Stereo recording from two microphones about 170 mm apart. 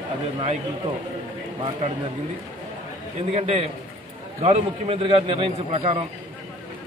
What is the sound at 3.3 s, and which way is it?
Speech, 40° right (ahead or behind).